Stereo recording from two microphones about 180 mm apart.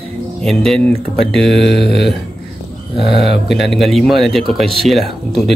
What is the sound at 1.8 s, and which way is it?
Speech, 70° left (ahead or behind).